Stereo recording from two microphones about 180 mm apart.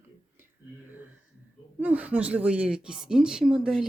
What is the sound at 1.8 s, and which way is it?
Speech, 10° right (ahead or behind).